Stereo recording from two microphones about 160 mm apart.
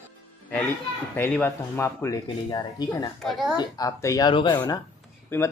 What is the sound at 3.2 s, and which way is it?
Child singing, centre (ahead or behind).